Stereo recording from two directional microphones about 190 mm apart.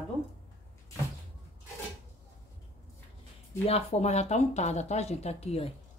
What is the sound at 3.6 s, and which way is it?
Speech, 35° left (ahead or behind).